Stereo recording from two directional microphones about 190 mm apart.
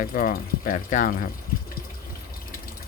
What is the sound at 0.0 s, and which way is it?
Speech, 50° left (ahead or behind).